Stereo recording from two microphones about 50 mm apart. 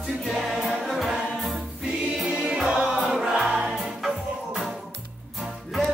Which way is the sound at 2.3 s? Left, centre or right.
Centre.